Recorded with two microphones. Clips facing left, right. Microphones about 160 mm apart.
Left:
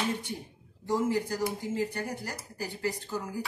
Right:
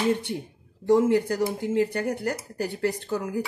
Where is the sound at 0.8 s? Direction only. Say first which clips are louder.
Right 8 dB; 65° right (ahead or behind).